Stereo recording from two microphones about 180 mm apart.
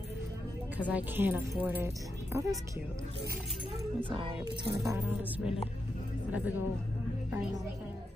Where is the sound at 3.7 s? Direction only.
25° right (ahead or behind).